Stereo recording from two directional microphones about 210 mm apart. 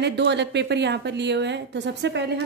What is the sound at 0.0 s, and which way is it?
A woman's voice, 55° right (ahead or behind).